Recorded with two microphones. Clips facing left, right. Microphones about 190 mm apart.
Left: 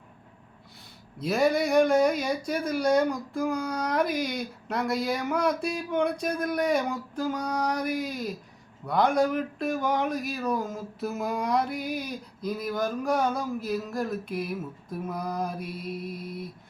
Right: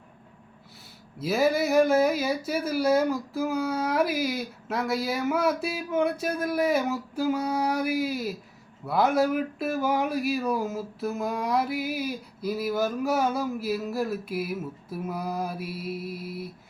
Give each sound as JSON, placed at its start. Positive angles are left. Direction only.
{"t": 1.2, "sound": "speech", "side_deg": -5}